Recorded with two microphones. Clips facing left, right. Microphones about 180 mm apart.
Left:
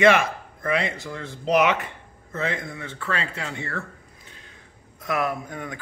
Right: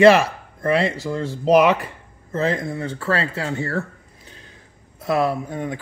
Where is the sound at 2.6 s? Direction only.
30° right (ahead or behind).